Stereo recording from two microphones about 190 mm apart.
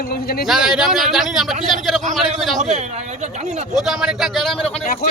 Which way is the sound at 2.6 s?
35° right (ahead or behind).